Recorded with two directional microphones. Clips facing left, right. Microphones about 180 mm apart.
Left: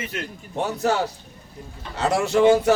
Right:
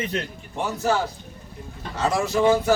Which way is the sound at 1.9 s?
70° left (ahead or behind).